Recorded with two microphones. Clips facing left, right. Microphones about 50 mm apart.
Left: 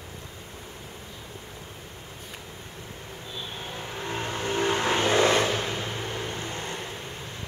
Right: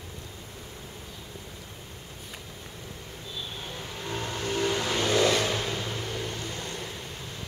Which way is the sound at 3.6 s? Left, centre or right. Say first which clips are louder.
Left 5 dB; left.